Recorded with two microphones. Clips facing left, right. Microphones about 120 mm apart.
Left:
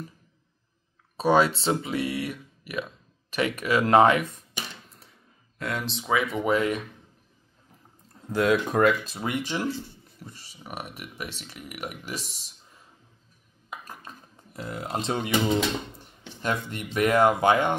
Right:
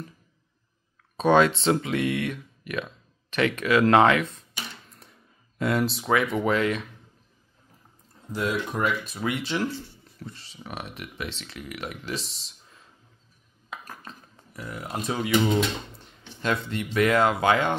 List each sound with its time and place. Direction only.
1.2 s speech: 10° left (ahead or behind)
1.7 s music: 25° left (ahead or behind)
2.2 s speech: 10° left (ahead or behind)
5.6 s speech: 10° right (ahead or behind)
6.0 s speech: 5° left (ahead or behind)
8.4 s speech: 85° left
8.8 s music: 35° left (ahead or behind)
9.4 s speech: 15° left (ahead or behind)
13.7 s dishes: 10° left (ahead or behind)
14.5 s speech: 25° left (ahead or behind)
16.0 s speech: 15° left (ahead or behind)